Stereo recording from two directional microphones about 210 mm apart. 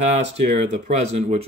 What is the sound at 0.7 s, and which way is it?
Speech, 30° right (ahead or behind).